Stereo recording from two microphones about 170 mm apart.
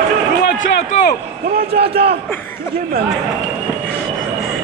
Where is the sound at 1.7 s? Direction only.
70° right (ahead or behind).